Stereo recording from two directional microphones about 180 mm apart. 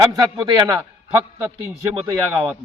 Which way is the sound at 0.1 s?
15° right (ahead or behind).